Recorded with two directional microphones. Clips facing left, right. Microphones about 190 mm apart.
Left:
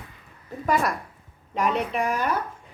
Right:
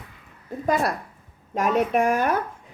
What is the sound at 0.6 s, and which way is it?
A woman's voice, 35° right (ahead or behind).